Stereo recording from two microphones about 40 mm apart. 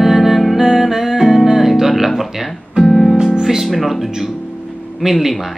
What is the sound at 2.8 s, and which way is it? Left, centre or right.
Music, right.